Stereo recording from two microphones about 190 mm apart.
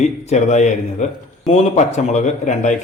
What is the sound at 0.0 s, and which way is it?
Speech, 35° left (ahead or behind).